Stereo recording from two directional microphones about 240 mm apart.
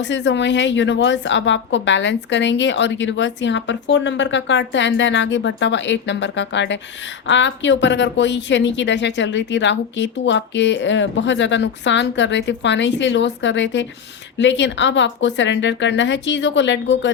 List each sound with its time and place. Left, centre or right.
0.0 s a woman's voice: left